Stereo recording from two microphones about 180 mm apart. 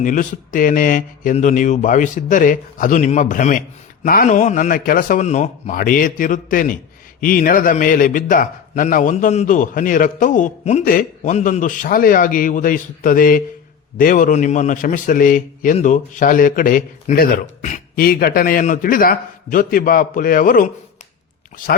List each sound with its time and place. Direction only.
0.0 s a man's voice: 45° left (ahead or behind)